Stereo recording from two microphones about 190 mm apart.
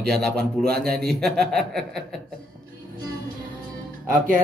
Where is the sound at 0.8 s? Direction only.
55° right (ahead or behind).